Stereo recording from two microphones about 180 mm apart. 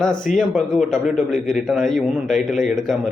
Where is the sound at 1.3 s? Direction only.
45° left (ahead or behind).